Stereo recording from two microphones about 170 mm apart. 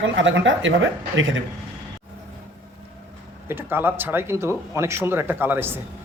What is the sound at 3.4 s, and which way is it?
A man's voice, 10° right (ahead or behind).